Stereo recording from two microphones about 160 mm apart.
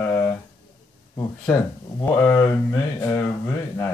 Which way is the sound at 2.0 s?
15° left (ahead or behind).